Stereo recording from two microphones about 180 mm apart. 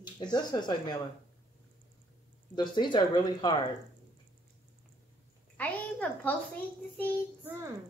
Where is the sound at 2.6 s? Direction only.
25° left (ahead or behind).